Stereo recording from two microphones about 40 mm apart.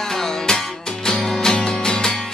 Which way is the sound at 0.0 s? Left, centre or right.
Centre.